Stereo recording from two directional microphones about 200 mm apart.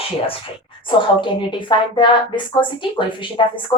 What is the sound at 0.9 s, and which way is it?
A woman's voice, 25° left (ahead or behind).